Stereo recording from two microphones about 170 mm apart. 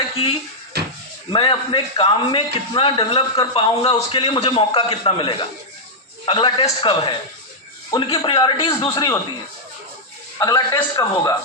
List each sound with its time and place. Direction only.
0.7 s a sound: 70° right (ahead or behind)
1.3 s a man's voice: 30° left (ahead or behind)
10.4 s a man's voice: 20° left (ahead or behind)